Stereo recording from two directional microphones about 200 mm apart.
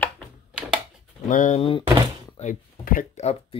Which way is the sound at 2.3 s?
40° left (ahead or behind).